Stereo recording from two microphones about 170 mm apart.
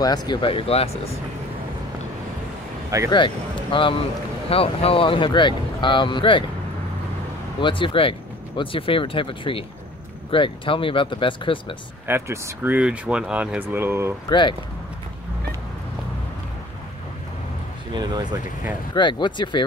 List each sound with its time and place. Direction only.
0.0 s speech: 25° left (ahead or behind)
3.1 s speech: 30° left (ahead or behind)
7.6 s speech: 30° left (ahead or behind)
12.1 s speech: 10° right (ahead or behind)
17.9 s speech: 25° right (ahead or behind)
18.9 s speech: 25° left (ahead or behind)